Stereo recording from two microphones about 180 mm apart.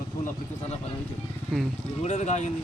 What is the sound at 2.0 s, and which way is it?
Speech, 40° left (ahead or behind).